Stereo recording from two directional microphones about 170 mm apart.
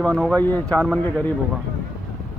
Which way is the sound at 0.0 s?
5° left (ahead or behind).